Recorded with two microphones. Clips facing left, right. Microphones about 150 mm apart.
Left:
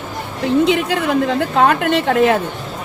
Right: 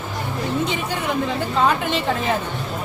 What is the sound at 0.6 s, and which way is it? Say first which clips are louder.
A woman's voice: left 8 dB; 70° left (ahead or behind).